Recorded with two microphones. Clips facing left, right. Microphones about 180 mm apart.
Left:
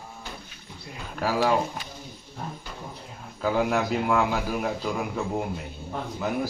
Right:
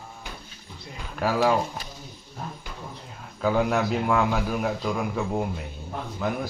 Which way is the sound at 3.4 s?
Centre (ahead or behind).